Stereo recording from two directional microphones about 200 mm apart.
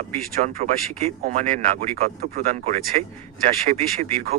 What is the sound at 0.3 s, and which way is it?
Speech, 40° right (ahead or behind).